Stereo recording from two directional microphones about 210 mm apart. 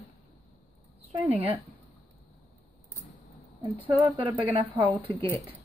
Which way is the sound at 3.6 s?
20° right (ahead or behind).